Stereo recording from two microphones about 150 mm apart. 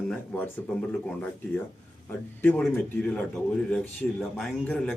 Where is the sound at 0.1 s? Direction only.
5° left (ahead or behind).